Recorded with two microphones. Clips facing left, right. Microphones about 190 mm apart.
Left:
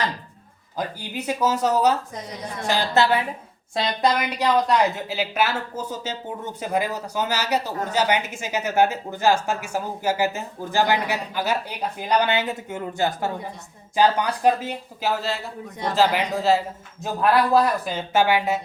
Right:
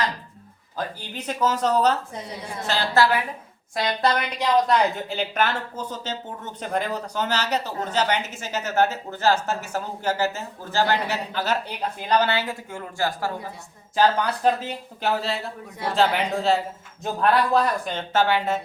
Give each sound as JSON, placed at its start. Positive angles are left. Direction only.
{"t": 0.8, "sound": "speech", "side_deg": 10}
{"t": 4.4, "sound": "speech", "side_deg": 0}